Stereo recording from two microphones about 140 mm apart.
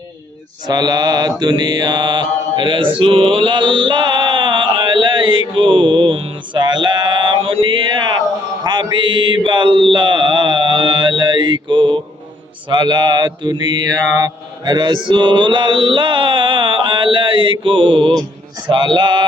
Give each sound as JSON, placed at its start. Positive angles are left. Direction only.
{"t": 0.7, "sound": "mantra", "side_deg": -30}